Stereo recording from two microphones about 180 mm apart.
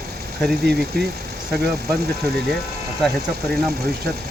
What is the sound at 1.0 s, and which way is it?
Speech, 60° right (ahead or behind).